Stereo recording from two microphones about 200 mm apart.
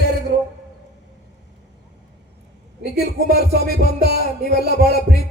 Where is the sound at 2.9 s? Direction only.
50° right (ahead or behind).